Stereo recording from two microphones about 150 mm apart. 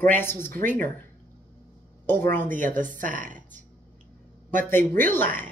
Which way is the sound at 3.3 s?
10° left (ahead or behind).